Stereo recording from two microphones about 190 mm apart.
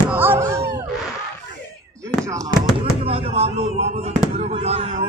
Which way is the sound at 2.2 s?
15° right (ahead or behind).